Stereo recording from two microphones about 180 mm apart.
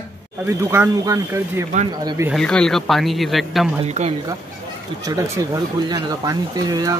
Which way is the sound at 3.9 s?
40° right (ahead or behind).